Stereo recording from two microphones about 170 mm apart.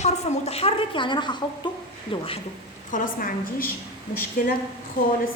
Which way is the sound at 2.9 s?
55° left (ahead or behind).